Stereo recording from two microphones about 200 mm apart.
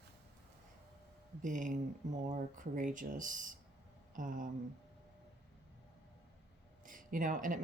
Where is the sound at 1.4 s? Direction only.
40° right (ahead or behind).